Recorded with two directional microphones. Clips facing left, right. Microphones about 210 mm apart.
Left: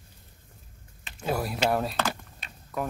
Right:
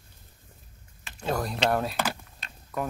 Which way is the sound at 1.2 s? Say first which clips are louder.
Even; 5° left (ahead or behind).